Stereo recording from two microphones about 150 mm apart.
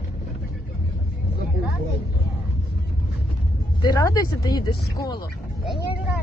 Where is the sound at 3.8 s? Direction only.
25° left (ahead or behind).